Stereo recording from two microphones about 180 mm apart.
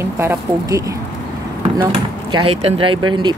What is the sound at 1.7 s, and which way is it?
Speech, 30° right (ahead or behind).